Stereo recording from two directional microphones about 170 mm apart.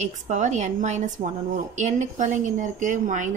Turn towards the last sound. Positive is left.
turn(degrees=-50)  # may be behind; listen again after turning